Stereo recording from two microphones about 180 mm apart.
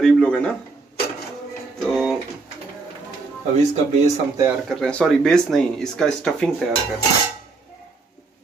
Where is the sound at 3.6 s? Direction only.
40° right (ahead or behind).